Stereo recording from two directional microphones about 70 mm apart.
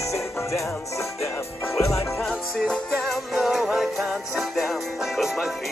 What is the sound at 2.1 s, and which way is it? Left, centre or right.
Music, centre.